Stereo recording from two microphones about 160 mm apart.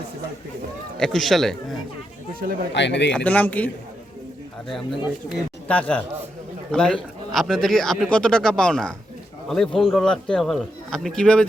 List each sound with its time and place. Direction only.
0.9 s speech: 5° left (ahead or behind)
2.7 s speech: 90° left
3.1 s speech: 10° left (ahead or behind)
4.7 s speech: centre (ahead or behind)